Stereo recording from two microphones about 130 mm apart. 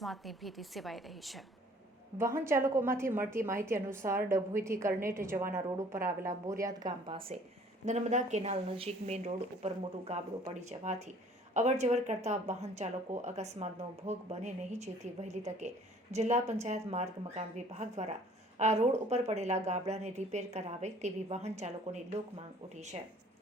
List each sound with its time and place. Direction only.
0.0 s a woman's voice: centre (ahead or behind)
2.1 s a woman's voice: 20° right (ahead or behind)
7.9 s a woman's voice: 65° right (ahead or behind)